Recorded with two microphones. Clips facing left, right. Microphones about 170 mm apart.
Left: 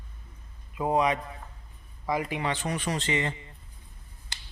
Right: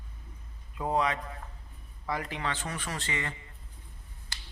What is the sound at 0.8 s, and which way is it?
Speech, 15° left (ahead or behind).